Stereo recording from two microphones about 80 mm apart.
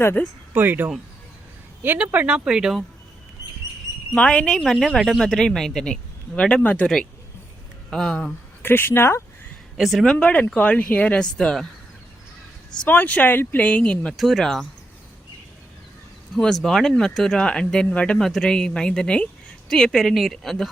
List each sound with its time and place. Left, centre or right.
0.2 s speech: left
0.5 s speech: right
2.1 s speech: centre
4.1 s speech: centre
6.8 s speech: centre
8.6 s speech: left
9.7 s speech: centre
10.5 s speech: centre
12.9 s speech: centre
16.3 s speech: centre